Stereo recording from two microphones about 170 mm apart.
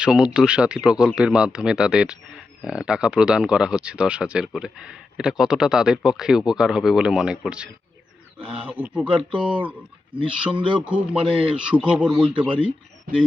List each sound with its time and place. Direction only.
0.0 s speech: 5° right (ahead or behind)
10.5 s a man's voice: 30° right (ahead or behind)
10.8 s speech: 10° right (ahead or behind)
11.3 s a man's voice: 35° right (ahead or behind)
11.7 s a man's voice: 5° right (ahead or behind)